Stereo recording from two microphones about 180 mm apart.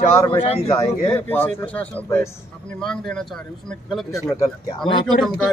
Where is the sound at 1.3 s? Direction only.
10° left (ahead or behind).